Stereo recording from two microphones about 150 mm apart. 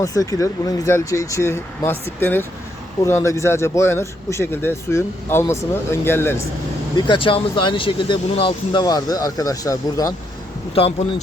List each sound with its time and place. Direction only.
0.0 s speech: 20° left (ahead or behind)
6.9 s speech: 35° left (ahead or behind)
10.8 s speech: 40° left (ahead or behind)